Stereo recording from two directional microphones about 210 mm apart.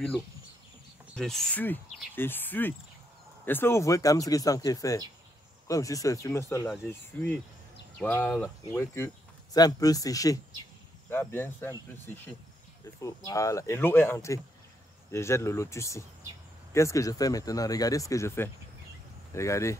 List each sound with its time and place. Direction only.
1.1 s speech: centre (ahead or behind)
13.0 s speech: 15° left (ahead or behind)